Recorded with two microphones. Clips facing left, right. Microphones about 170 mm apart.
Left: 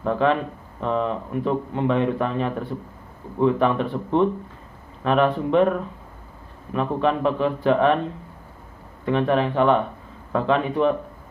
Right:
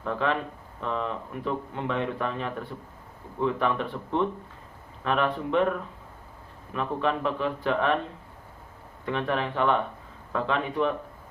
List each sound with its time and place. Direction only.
0.0 s speech: 30° left (ahead or behind)
6.7 s speech: 25° left (ahead or behind)
9.0 s speech: 25° left (ahead or behind)